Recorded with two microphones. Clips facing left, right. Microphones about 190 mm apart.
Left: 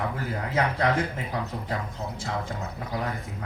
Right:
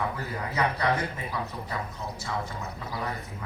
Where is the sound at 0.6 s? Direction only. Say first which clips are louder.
Left 2 dB; 55° left (ahead or behind).